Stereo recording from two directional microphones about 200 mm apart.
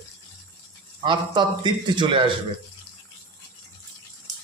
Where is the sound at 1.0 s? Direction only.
25° right (ahead or behind).